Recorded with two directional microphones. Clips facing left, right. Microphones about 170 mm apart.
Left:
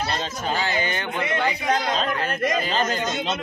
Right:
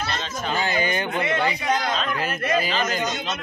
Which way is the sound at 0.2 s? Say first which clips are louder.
Left 1 dB; 40° left (ahead or behind).